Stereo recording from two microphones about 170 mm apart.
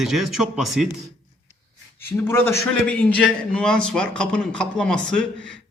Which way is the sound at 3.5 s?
5° left (ahead or behind).